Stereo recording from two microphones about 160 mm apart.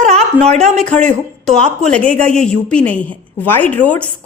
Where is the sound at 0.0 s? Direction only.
45° right (ahead or behind).